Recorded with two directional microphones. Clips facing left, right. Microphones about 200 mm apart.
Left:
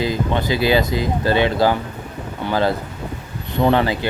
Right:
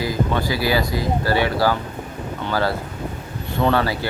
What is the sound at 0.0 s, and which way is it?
Speech, 20° left (ahead or behind).